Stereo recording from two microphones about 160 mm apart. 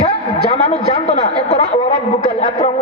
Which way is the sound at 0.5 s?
40° left (ahead or behind).